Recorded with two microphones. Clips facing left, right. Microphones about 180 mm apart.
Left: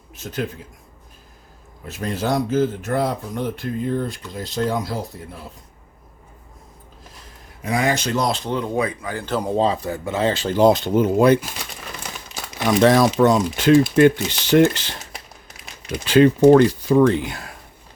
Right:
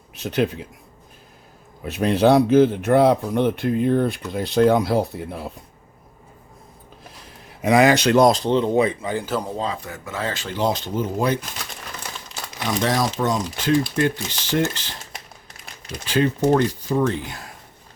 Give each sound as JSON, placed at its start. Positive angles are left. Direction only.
{"t": 0.1, "sound": "a man's voice", "side_deg": -70}
{"t": 1.8, "sound": "speech", "side_deg": -70}
{"t": 7.6, "sound": "a man's voice", "side_deg": -80}
{"t": 8.3, "sound": "speech", "side_deg": -35}
{"t": 8.5, "sound": "speech", "side_deg": -25}
{"t": 9.6, "sound": "speech", "side_deg": 30}
{"t": 10.5, "sound": "speech", "side_deg": 50}
{"t": 12.6, "sound": "speech", "side_deg": 65}
{"t": 16.0, "sound": "speech", "side_deg": 80}